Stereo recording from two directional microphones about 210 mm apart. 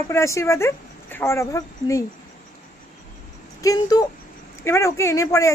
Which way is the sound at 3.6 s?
15° left (ahead or behind).